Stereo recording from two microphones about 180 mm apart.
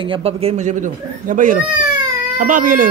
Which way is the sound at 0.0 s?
30° right (ahead or behind).